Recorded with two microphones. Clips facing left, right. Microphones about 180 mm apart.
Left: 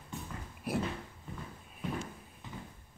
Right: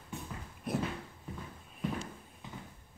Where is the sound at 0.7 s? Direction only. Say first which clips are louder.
Left 1 dB; 5° left (ahead or behind).